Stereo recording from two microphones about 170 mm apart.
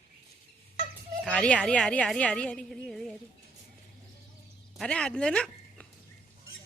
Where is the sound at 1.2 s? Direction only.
5° left (ahead or behind).